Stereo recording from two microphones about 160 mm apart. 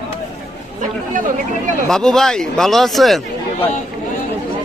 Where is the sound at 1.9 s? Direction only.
5° left (ahead or behind).